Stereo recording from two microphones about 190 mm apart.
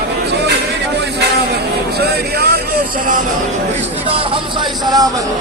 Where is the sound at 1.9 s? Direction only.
55° right (ahead or behind).